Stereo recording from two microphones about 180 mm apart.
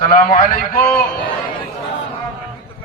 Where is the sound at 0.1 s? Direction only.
50° left (ahead or behind).